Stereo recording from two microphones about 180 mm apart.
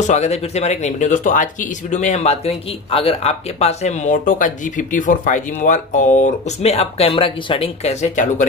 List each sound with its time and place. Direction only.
0.0 s speech: 40° left (ahead or behind)